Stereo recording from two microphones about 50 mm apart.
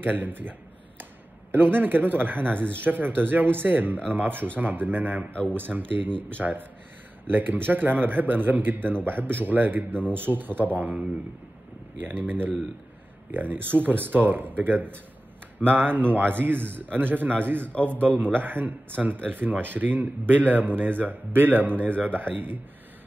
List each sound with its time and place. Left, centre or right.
0.0 s a man's voice: right
12.0 s a man's voice: right